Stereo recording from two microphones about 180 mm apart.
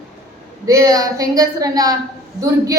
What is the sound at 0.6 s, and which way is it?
A woman's voice, 20° right (ahead or behind).